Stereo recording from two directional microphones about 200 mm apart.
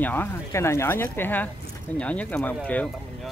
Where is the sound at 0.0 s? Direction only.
10° left (ahead or behind).